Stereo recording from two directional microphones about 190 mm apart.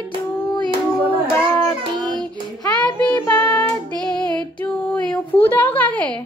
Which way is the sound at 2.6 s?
20° left (ahead or behind).